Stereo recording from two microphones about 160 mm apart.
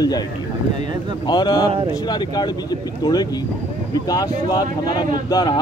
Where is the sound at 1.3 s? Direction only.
25° left (ahead or behind).